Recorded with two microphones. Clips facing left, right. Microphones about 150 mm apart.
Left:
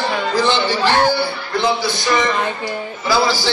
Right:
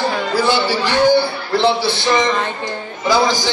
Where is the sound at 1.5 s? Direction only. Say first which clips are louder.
Right 4 dB; 30° right (ahead or behind).